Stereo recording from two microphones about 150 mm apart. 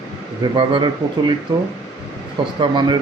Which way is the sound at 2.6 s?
30° right (ahead or behind).